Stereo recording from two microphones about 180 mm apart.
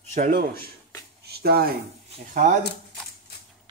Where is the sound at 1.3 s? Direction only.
60° right (ahead or behind).